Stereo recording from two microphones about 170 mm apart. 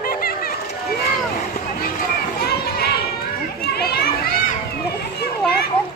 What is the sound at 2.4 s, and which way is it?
Children playing, 65° left (ahead or behind).